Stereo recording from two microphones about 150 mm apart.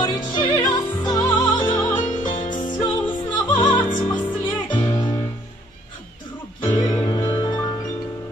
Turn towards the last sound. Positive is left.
turn(degrees=30)  # may be behind; listen again after turning